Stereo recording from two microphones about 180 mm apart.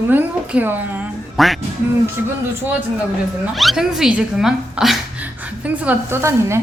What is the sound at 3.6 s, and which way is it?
Speech, centre (ahead or behind).